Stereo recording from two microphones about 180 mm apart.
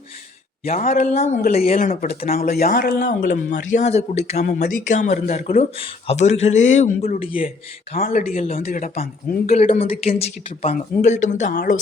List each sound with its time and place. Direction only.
0.6 s speech: 40° left (ahead or behind); by 3.2 s 60° left (ahead or behind)
3.2 s speech: 45° left (ahead or behind)
7.9 s speech: 55° left (ahead or behind)
8.3 s speech: 35° left (ahead or behind)
8.6 s speech: 45° left (ahead or behind)
9.6 s speech: 35° left (ahead or behind)